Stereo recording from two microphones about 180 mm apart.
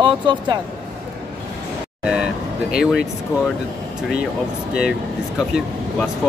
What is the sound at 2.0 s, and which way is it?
Vehicle, 5° right (ahead or behind).